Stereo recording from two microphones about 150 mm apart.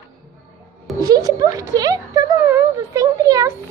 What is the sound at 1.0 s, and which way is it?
A child's voice, 25° right (ahead or behind).